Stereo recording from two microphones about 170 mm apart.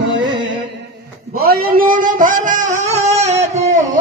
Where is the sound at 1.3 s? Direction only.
60° right (ahead or behind); by 3.3 s 40° right (ahead or behind).